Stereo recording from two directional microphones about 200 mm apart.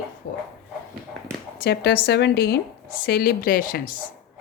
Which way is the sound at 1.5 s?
55° left (ahead or behind).